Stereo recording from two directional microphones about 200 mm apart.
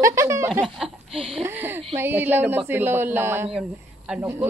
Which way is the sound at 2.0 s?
10° right (ahead or behind).